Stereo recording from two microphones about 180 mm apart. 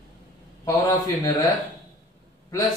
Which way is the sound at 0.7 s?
20° left (ahead or behind).